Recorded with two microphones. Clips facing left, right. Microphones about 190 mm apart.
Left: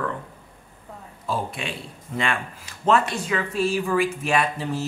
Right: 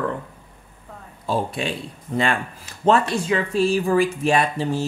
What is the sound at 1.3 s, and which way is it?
Speech, 35° right (ahead or behind).